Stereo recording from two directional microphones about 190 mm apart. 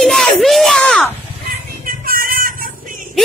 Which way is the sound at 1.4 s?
50° right (ahead or behind).